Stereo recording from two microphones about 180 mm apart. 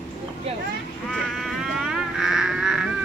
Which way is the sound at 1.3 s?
Centre (ahead or behind).